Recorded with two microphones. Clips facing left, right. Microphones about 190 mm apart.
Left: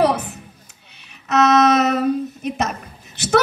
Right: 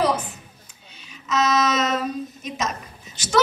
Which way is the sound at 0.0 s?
65° left (ahead or behind).